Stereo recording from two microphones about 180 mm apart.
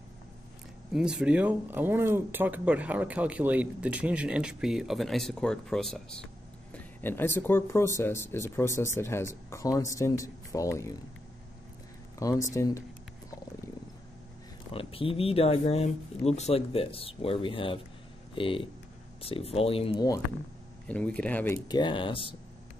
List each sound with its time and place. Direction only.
0.9 s speech: 5° right (ahead or behind); by 11.0 s 15° left (ahead or behind)
12.2 s speech: 20° left (ahead or behind)
14.7 s speech: 30° left (ahead or behind)
20.9 s speech: 5° left (ahead or behind)
21.6 s speech: 25° left (ahead or behind)